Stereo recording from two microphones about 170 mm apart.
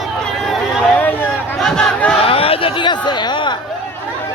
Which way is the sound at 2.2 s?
35° left (ahead or behind).